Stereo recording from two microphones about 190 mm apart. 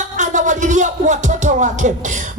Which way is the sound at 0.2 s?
40° right (ahead or behind).